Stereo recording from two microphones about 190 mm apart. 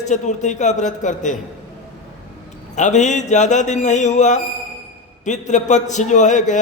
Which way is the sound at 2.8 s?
40° left (ahead or behind).